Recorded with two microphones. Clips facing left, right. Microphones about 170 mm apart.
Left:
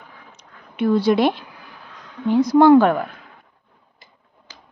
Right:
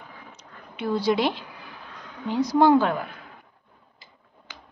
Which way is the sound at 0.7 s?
60° left (ahead or behind).